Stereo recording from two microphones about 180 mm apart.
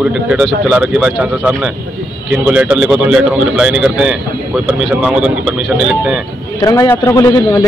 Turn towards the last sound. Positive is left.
turn(degrees=20)  # may be behind; listen again after turning